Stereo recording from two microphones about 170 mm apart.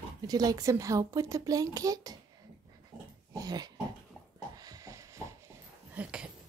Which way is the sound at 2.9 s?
20° right (ahead or behind).